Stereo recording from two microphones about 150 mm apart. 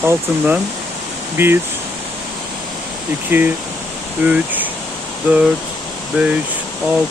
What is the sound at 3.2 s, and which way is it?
Speech, 15° right (ahead or behind).